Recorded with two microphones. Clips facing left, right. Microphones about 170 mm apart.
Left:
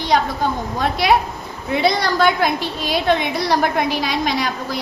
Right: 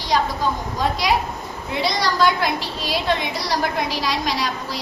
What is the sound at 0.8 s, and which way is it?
A woman's voice, 60° left (ahead or behind).